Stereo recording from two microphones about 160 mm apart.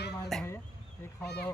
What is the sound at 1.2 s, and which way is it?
Speech, 90° left.